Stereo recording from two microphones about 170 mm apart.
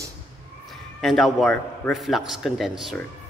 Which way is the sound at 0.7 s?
Centre (ahead or behind).